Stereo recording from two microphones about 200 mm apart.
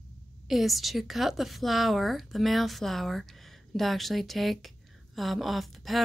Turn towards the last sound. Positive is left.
turn(degrees=0)  # may be behind; listen again after turning